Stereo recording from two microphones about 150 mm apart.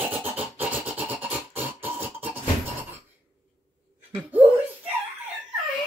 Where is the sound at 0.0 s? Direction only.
10° right (ahead or behind).